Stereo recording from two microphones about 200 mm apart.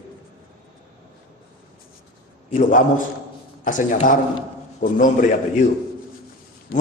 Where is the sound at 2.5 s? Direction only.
40° left (ahead or behind).